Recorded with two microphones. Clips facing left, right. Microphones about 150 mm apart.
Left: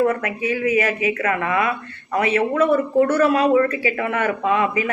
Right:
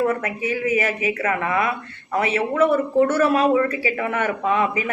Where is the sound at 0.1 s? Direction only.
30° right (ahead or behind).